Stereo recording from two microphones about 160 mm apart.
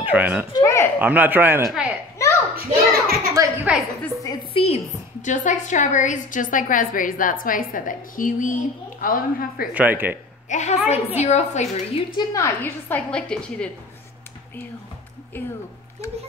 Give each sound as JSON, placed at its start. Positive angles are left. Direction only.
{"t": 0.0, "sound": "a child's voice", "side_deg": -10}
{"t": 0.5, "sound": "a sound", "side_deg": 20}
{"t": 0.9, "sound": "a man's voice", "side_deg": -10}
{"t": 2.5, "sound": "a sound", "side_deg": -70}
{"t": 3.7, "sound": "a woman's voice", "side_deg": -5}
{"t": 4.0, "sound": "a sound", "side_deg": 20}
{"t": 4.6, "sound": "a woman's voice", "side_deg": 40}
{"t": 9.8, "sound": "a man's voice", "side_deg": -10}
{"t": 10.5, "sound": "a woman's voice", "side_deg": 45}
{"t": 12.2, "sound": "a woman's voice", "side_deg": 20}
{"t": 15.3, "sound": "a woman's voice", "side_deg": 10}